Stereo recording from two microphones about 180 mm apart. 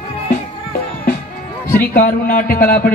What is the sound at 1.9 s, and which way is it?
Speech, 50° left (ahead or behind).